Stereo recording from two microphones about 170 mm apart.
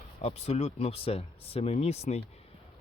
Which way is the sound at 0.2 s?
40° left (ahead or behind).